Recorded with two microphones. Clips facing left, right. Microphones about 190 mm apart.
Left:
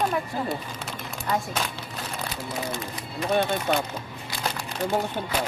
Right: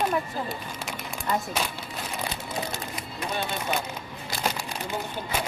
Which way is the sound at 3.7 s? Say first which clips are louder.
Left 4 dB; 65° left (ahead or behind).